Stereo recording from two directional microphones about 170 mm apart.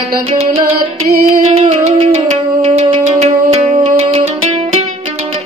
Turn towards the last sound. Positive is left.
turn(degrees=-35)  # may be behind; listen again after turning